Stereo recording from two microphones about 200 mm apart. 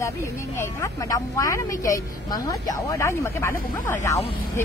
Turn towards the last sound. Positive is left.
turn(degrees=10)  # may be behind; listen again after turning